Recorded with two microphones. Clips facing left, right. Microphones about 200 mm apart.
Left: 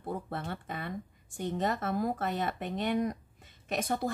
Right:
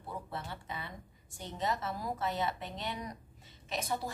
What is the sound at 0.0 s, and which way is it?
Speech, 55° left (ahead or behind).